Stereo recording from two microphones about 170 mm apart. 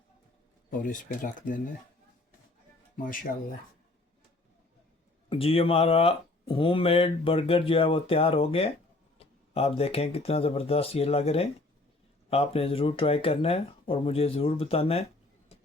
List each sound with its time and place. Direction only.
0.7 s speech: 50° left (ahead or behind)
2.9 s speech: 55° left (ahead or behind)
5.3 s speech: 35° left (ahead or behind)